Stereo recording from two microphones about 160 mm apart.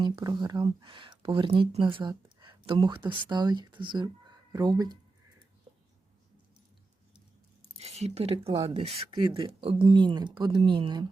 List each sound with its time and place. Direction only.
0.0 s speech: 25° right (ahead or behind)
7.8 s speech: 40° right (ahead or behind)